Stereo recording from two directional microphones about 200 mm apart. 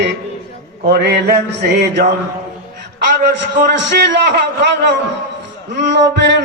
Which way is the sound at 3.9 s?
60° right (ahead or behind).